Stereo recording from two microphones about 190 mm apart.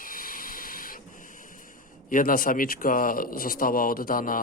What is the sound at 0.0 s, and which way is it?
Hiss, 45° left (ahead or behind).